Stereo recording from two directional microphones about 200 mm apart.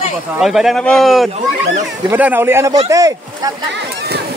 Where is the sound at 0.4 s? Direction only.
Centre (ahead or behind).